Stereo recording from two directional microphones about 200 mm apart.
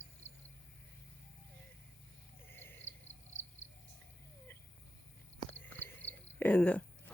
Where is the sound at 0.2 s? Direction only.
65° left (ahead or behind).